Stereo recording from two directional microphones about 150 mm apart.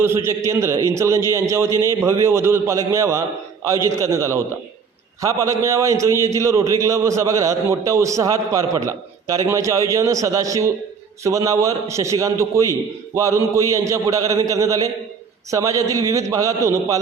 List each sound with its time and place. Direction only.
0.0 s a man's voice: 15° right (ahead or behind)